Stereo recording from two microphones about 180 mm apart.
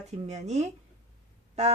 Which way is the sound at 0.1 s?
40° right (ahead or behind).